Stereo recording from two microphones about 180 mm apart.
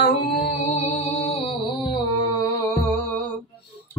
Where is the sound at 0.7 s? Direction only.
35° left (ahead or behind).